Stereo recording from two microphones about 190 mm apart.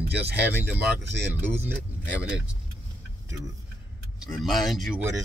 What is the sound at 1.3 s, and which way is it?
Speech, 10° right (ahead or behind).